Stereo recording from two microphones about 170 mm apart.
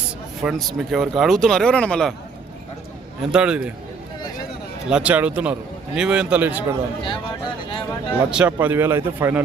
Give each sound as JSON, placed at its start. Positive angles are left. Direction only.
{"t": 0.4, "sound": "speech", "side_deg": 0}
{"t": 3.2, "sound": "speech", "side_deg": -5}
{"t": 4.9, "sound": "a man's voice", "side_deg": -5}
{"t": 7.0, "sound": "a sound", "side_deg": 30}
{"t": 8.3, "sound": "a man's voice", "side_deg": -5}